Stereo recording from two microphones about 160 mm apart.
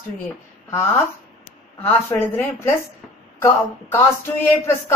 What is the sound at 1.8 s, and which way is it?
Speech, 15° left (ahead or behind).